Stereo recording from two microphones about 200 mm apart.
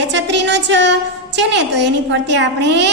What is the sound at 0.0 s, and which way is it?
A woman's voice, 60° right (ahead or behind).